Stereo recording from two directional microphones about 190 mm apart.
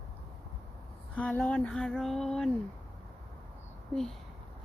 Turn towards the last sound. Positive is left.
turn(degrees=0)  # may be behind; listen again after turning